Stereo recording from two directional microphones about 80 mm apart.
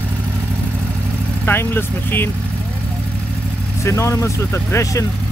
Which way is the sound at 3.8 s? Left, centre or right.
Left.